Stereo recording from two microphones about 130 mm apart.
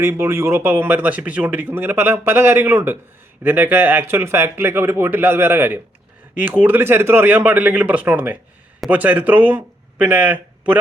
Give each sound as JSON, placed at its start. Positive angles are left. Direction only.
{"t": 0.0, "sound": "a man's voice", "side_deg": -20}